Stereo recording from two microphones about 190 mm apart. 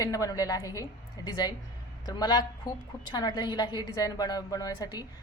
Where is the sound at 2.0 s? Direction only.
20° left (ahead or behind).